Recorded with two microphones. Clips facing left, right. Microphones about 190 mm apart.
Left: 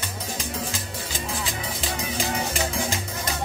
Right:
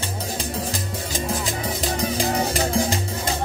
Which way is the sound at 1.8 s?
40° right (ahead or behind).